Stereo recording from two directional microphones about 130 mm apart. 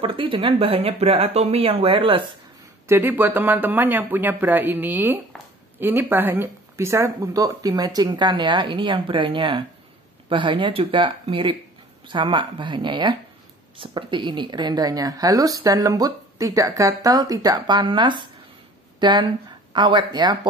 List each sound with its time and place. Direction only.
0.0 s speech: 40° right (ahead or behind)
2.9 s a woman's voice: 15° right (ahead or behind); by 20.3 s 35° right (ahead or behind)